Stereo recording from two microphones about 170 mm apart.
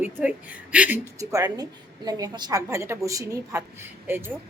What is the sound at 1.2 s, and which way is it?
A woman's voice, 20° right (ahead or behind).